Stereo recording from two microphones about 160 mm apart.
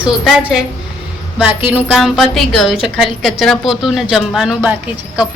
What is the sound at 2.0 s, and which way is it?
Speech, centre (ahead or behind).